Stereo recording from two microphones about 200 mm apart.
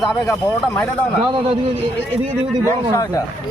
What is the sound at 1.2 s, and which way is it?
Speech, 25° right (ahead or behind).